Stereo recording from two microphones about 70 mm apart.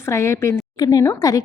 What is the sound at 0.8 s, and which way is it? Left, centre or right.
Speech, left.